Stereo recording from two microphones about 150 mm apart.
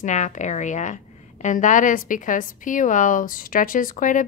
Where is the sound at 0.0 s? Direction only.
55° left (ahead or behind).